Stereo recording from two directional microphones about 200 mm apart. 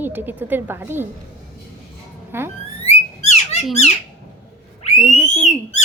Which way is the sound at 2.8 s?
35° left (ahead or behind).